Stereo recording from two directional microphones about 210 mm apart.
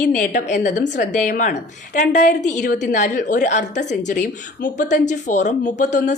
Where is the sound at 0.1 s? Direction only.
35° left (ahead or behind).